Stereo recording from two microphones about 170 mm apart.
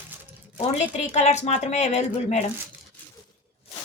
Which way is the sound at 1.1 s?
40° left (ahead or behind).